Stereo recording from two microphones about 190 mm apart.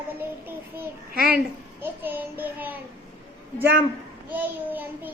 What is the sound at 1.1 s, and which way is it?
Speech, 50° right (ahead or behind).